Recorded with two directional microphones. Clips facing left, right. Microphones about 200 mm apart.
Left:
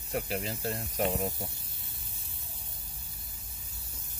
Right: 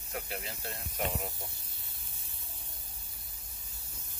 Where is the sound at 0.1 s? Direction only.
35° left (ahead or behind).